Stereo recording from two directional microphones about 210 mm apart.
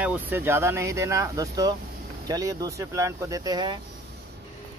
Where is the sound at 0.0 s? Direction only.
10° right (ahead or behind).